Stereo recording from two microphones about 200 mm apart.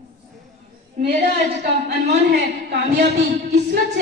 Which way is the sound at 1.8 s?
55° right (ahead or behind).